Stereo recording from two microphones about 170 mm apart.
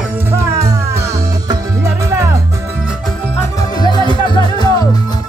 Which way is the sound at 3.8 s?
25° left (ahead or behind).